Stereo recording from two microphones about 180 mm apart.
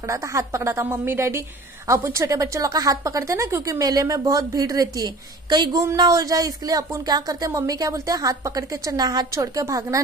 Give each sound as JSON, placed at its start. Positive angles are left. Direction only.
{"t": 0.1, "sound": "a woman's voice", "side_deg": -15}